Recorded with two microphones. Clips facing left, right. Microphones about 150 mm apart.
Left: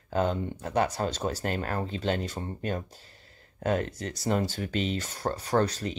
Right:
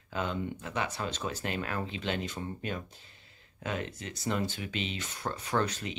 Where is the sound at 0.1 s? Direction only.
40° left (ahead or behind).